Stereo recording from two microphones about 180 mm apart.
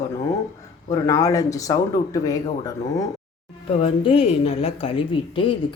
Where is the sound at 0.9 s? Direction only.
15° left (ahead or behind).